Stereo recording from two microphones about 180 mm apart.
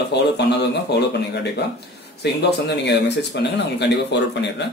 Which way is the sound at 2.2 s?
75° left (ahead or behind).